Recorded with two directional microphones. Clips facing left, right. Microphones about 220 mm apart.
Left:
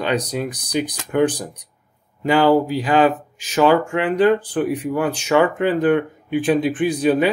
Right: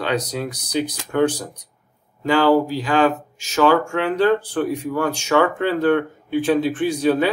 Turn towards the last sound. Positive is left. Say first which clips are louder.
# left 1 dB
turn(degrees=15)  # may be behind; listen again after turning